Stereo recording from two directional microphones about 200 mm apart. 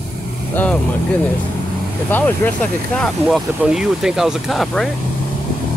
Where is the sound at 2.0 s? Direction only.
10° left (ahead or behind).